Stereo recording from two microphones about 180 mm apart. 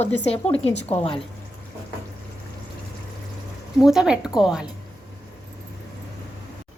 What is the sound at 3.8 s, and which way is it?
Speech, centre (ahead or behind).